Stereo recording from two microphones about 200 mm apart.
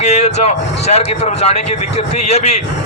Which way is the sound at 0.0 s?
35° left (ahead or behind).